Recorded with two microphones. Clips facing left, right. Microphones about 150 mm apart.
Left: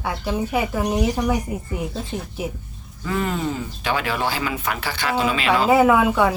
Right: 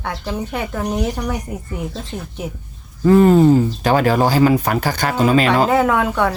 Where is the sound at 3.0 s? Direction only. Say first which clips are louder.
Right 13 dB; 40° right (ahead or behind).